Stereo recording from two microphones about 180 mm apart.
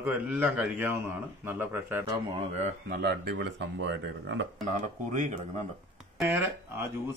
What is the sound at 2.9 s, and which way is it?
Speech, 65° right (ahead or behind).